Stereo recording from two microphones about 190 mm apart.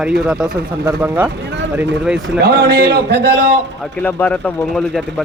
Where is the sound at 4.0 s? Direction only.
10° left (ahead or behind).